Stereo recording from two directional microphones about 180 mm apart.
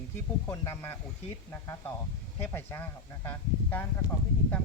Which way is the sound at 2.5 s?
10° left (ahead or behind).